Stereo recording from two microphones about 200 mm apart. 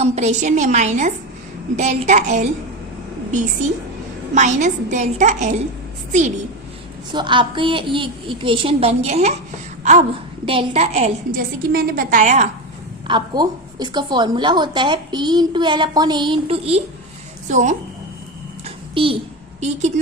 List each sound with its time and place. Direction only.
0.0 s a woman's voice: 35° right (ahead or behind)
4.4 s a woman's voice: 35° right (ahead or behind)
7.1 s a woman's voice: 25° right (ahead or behind)
10.4 s a woman's voice: 25° right (ahead or behind)
11.3 s a woman's voice: 45° right (ahead or behind)
13.1 s a woman's voice: 20° right (ahead or behind); by 17.7 s 35° right (ahead or behind)
18.6 s a sound: 25° right (ahead or behind)